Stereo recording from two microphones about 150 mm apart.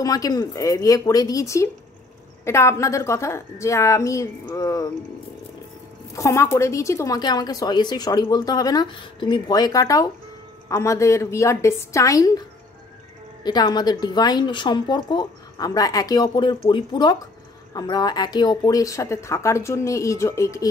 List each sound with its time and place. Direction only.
0.0 s speech: 25° left (ahead or behind)
6.1 s speech: 20° left (ahead or behind)